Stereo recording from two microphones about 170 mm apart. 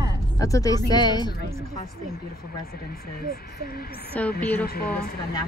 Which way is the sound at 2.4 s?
65° left (ahead or behind).